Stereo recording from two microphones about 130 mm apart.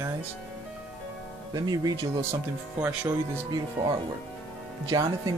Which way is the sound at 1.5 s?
30° right (ahead or behind).